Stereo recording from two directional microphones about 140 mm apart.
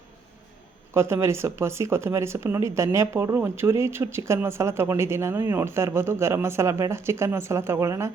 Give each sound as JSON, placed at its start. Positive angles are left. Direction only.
{"t": 0.9, "sound": "speech", "side_deg": -20}